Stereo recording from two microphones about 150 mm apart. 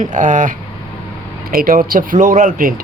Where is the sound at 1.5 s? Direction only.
75° right (ahead or behind).